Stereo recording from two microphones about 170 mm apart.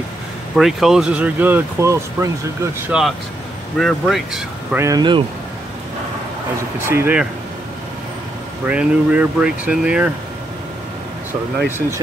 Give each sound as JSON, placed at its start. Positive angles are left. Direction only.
{"t": 0.6, "sound": "speech", "side_deg": 0}
{"t": 2.9, "sound": "speech", "side_deg": 0}
{"t": 4.7, "sound": "speech", "side_deg": -20}
{"t": 6.9, "sound": "speech", "side_deg": -10}
{"t": 8.6, "sound": "speech", "side_deg": -10}